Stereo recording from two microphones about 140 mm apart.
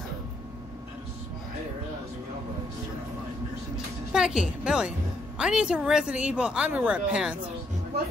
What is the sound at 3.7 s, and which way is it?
Speech, 5° right (ahead or behind).